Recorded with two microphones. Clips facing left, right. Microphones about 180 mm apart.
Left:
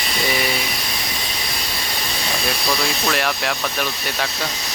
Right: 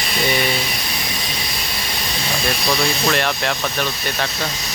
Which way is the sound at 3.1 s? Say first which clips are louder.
Right 2 dB; 5° left (ahead or behind).